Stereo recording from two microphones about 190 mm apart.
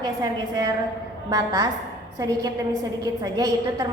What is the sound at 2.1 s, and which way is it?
A woman's voice, 20° right (ahead or behind).